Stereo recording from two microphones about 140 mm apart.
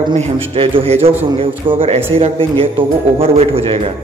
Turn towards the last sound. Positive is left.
turn(degrees=-40)  # may be behind; listen again after turning